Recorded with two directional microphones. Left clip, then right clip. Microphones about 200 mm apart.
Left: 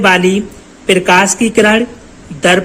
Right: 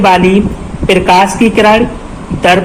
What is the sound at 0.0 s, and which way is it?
A woman's voice, 35° left (ahead or behind).